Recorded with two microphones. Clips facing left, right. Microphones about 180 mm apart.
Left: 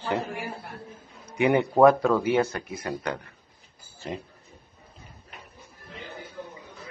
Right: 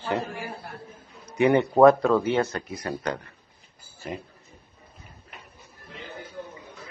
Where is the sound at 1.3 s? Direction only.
15° left (ahead or behind).